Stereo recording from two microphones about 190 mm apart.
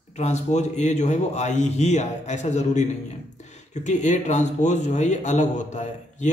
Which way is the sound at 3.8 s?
40° left (ahead or behind).